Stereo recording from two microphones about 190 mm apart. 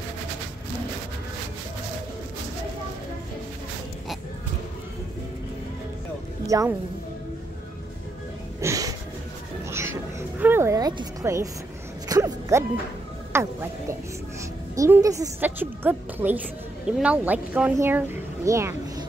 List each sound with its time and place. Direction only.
6.4 s speech: 15° right (ahead or behind)
8.5 s a sound: 15° right (ahead or behind)
10.4 s music: 15° right (ahead or behind)
13.3 s a woman's voice: 15° right (ahead or behind)